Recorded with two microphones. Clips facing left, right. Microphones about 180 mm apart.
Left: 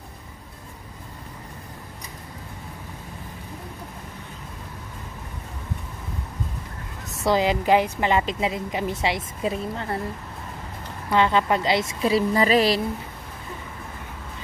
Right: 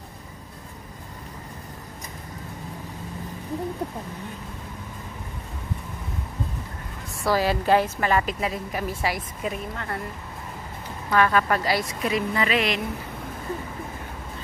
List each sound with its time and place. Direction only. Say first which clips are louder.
7.1 s a woman's voice: left 2 dB; 20° left (ahead or behind)
11.1 s a woman's voice: left 1 dB; 20° left (ahead or behind)